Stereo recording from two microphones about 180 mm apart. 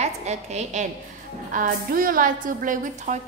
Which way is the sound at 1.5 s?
50° right (ahead or behind).